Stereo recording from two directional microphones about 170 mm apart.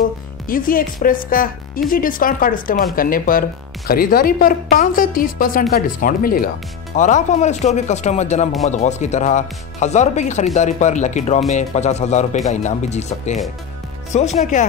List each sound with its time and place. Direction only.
0.5 s speech: 55° left (ahead or behind)
7.0 s speech: 45° left (ahead or behind)